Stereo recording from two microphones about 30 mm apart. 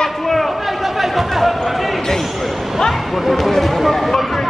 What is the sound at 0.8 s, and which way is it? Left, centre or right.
Chatter, centre.